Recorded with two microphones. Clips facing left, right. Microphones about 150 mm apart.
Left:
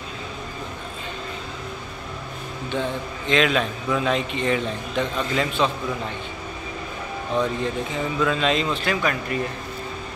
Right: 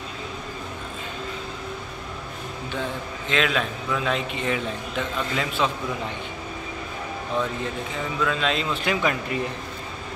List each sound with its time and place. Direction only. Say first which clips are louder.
3.3 s a man's voice: left 4 dB; centre (ahead or behind)
8.2 s a man's voice: left 3 dB; centre (ahead or behind)
8.8 s speech: even; 20° right (ahead or behind)